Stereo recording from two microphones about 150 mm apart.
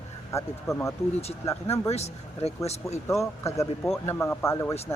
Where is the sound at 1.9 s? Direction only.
45° left (ahead or behind).